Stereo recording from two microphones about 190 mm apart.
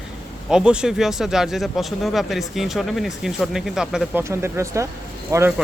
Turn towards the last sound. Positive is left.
turn(degrees=-15)  # may be behind; listen again after turning